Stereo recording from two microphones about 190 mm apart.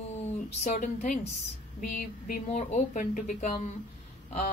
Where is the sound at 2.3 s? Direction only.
40° left (ahead or behind).